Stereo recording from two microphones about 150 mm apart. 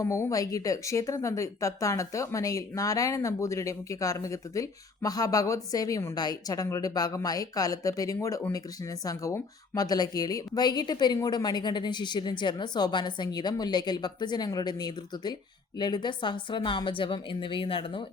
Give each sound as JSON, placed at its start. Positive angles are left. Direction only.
{"t": 0.0, "sound": "a woman's voice", "side_deg": 20}